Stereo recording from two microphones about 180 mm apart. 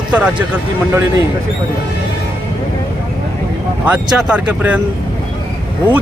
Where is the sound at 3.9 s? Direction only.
5° right (ahead or behind).